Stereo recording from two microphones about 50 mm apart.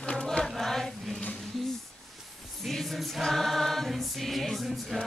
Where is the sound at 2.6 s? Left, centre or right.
Centre.